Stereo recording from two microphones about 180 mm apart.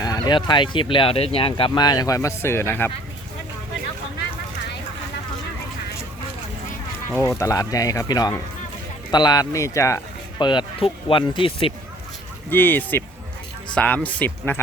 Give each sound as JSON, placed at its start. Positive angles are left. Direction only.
{"t": 0.0, "sound": "speech", "side_deg": 20}
{"t": 7.1, "sound": "speech", "side_deg": 15}
{"t": 12.5, "sound": "speech", "side_deg": 10}